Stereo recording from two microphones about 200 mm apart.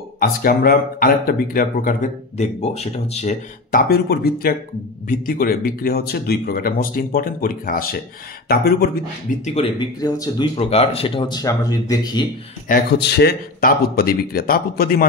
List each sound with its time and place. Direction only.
0.2 s speech: 45° left (ahead or behind)
3.9 s speech: 50° left (ahead or behind)
9.4 s speech: 30° left (ahead or behind)
9.9 s speech: 20° left (ahead or behind)
10.5 s speech: 30° left (ahead or behind)
12.6 s speech: 50° left (ahead or behind)